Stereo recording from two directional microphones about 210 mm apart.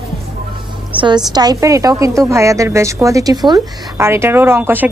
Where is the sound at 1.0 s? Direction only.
20° right (ahead or behind).